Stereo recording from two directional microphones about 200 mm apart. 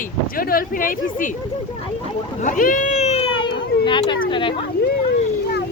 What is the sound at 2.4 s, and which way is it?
Speech, 40° left (ahead or behind).